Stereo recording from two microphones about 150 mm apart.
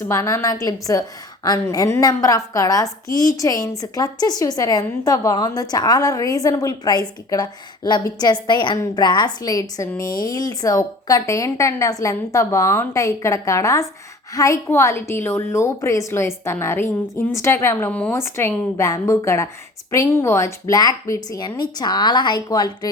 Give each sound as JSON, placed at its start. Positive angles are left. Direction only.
{"t": 0.0, "sound": "a woman's voice", "side_deg": 20}